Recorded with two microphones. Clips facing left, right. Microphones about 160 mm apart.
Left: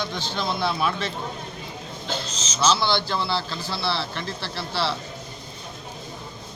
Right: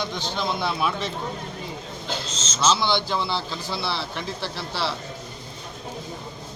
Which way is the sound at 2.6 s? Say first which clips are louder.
Even; 15° right (ahead or behind).